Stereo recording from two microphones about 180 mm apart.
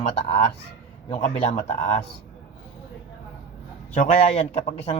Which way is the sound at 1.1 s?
40° left (ahead or behind).